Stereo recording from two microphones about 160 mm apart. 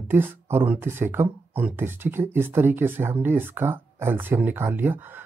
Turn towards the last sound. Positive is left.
turn(degrees=-10)  # may be behind; listen again after turning